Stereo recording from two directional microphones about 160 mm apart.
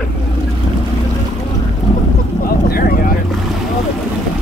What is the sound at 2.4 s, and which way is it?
Vehicle, 65° left (ahead or behind).